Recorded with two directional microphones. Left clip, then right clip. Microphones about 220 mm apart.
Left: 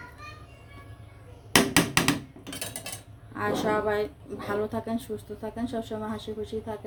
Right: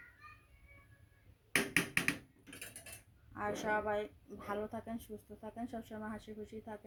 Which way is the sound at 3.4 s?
15° right (ahead or behind).